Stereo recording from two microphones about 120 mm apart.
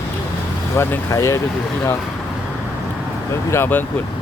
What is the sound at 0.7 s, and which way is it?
Speech, 20° left (ahead or behind).